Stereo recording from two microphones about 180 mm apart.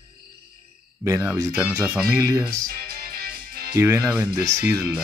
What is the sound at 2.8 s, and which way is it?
Music, 55° right (ahead or behind).